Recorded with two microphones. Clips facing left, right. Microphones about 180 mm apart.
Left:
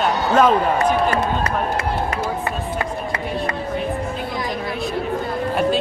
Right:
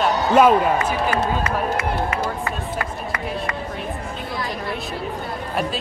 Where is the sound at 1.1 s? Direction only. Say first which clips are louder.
Left 1 dB; 35° left (ahead or behind).